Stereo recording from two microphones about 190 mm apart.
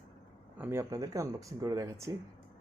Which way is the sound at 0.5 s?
15° right (ahead or behind).